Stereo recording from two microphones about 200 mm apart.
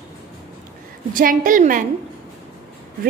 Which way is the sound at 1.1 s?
45° right (ahead or behind).